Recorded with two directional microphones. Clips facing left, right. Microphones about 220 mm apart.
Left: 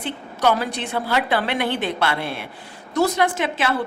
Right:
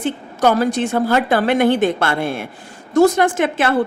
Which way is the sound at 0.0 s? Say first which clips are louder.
Right 5 dB; 45° right (ahead or behind).